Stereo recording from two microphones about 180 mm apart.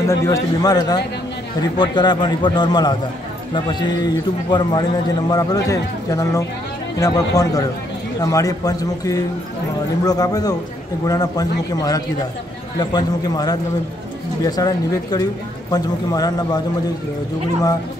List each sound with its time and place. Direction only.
0.0 s speech: 15° left (ahead or behind)
12.7 s speech: 20° left (ahead or behind)